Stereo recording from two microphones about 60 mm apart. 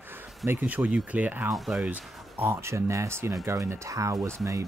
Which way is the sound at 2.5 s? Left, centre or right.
Right.